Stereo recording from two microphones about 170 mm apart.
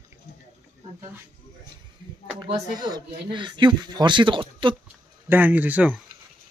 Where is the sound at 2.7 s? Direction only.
25° right (ahead or behind).